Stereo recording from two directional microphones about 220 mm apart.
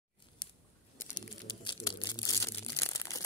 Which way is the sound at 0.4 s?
20° left (ahead or behind).